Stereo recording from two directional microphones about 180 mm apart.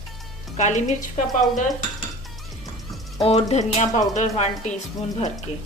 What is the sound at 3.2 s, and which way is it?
A woman's voice, 35° left (ahead or behind).